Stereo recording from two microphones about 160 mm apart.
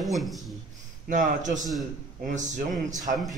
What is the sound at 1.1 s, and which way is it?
A man's voice, 50° right (ahead or behind).